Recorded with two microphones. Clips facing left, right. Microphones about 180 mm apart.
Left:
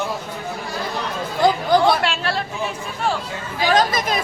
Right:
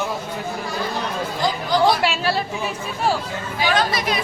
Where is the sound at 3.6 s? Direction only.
45° left (ahead or behind).